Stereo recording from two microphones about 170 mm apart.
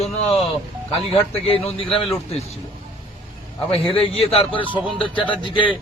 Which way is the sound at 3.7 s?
35° left (ahead or behind).